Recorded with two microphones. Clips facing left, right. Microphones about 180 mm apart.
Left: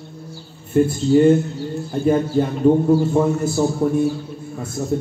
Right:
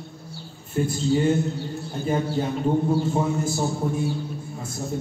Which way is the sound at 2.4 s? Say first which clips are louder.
Left 6 dB; 55° left (ahead or behind).